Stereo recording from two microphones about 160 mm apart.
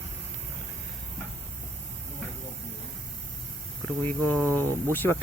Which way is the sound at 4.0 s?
10° left (ahead or behind).